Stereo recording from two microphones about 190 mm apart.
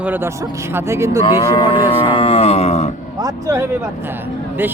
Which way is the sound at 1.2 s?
25° left (ahead or behind).